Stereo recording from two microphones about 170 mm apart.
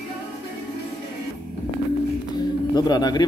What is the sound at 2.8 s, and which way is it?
Speech, 25° left (ahead or behind).